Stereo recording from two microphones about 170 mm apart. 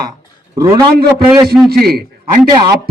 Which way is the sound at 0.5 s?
20° right (ahead or behind).